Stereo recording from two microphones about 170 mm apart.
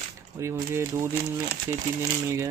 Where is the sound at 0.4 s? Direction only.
15° right (ahead or behind).